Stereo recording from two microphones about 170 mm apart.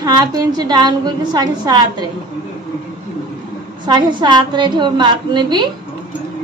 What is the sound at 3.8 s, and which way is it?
A woman's voice, 25° right (ahead or behind).